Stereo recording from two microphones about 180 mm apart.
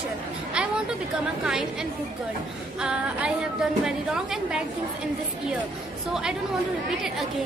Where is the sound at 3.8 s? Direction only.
5° right (ahead or behind).